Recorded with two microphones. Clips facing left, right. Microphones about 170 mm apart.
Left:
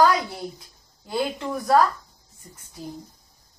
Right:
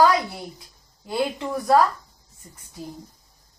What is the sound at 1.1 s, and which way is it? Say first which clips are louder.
Speech: right 1 dB; centre (ahead or behind).